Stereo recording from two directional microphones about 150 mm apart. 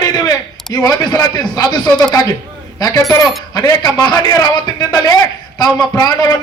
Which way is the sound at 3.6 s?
25° left (ahead or behind).